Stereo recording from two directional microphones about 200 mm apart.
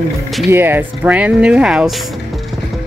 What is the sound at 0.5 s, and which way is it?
Speech, 10° right (ahead or behind).